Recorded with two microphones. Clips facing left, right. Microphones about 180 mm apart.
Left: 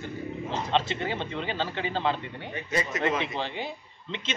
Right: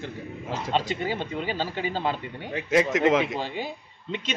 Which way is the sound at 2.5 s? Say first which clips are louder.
Right 8 dB; 90° right.